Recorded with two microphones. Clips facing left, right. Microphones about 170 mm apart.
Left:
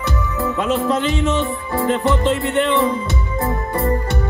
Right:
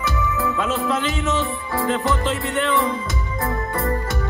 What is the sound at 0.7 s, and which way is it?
Music, 30° left (ahead or behind).